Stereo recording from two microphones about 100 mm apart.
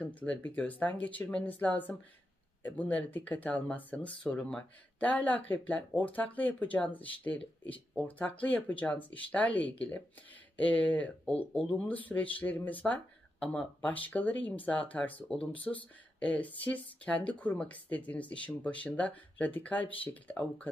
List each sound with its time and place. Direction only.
0.0 s speech: 15° left (ahead or behind)